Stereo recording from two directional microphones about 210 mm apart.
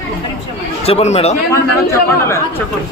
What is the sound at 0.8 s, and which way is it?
Speech, 30° left (ahead or behind).